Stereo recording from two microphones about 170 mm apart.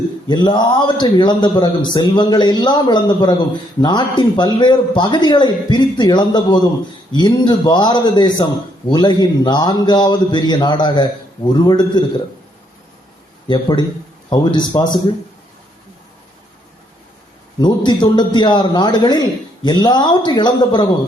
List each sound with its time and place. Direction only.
0.3 s a man's voice: 25° left (ahead or behind)
13.5 s a man's voice: 25° left (ahead or behind)
17.6 s a man's voice: 25° left (ahead or behind)